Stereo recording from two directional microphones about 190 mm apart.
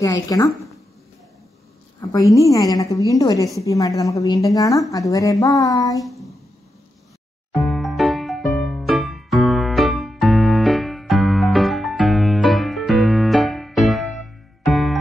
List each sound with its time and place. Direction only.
0.0 s a woman's voice: 20° left (ahead or behind)
2.3 s a woman's voice: 20° left (ahead or behind)
6.0 s a sound: centre (ahead or behind)
7.5 s music: centre (ahead or behind)